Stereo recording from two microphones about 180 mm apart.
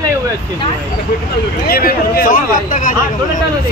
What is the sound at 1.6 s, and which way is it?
Speech, 55° left (ahead or behind).